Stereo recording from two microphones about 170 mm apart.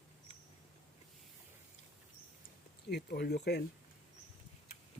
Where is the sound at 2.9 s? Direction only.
75° left (ahead or behind).